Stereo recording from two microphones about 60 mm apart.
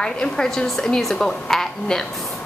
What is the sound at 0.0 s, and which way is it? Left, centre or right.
A woman's voice, centre.